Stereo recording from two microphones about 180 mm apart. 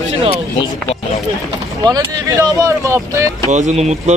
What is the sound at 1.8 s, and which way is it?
Speech, 20° right (ahead or behind).